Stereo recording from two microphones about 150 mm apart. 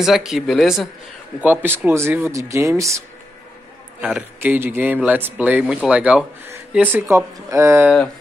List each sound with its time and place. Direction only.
0.0 s speech: 5° right (ahead or behind)
1.4 s speech: 10° right (ahead or behind)
4.0 s speech: 10° right (ahead or behind)